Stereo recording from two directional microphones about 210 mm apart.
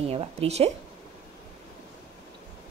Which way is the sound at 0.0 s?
30° right (ahead or behind).